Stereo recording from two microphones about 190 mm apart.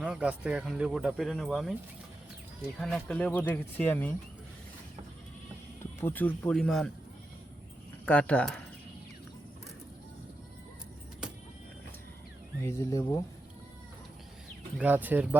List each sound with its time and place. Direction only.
0.0 s speech: 5° right (ahead or behind)
2.8 s speech: 5° left (ahead or behind)
6.0 s speech: 10° left (ahead or behind)
8.0 s speech: 5° left (ahead or behind)
12.6 s speech: 15° left (ahead or behind)
14.8 s speech: 10° right (ahead or behind)